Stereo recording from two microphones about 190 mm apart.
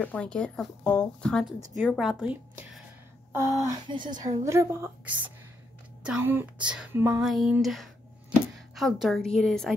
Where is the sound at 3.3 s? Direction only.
15° right (ahead or behind).